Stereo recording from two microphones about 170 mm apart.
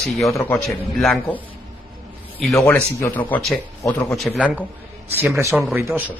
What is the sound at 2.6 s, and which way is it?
A man's voice, 15° left (ahead or behind).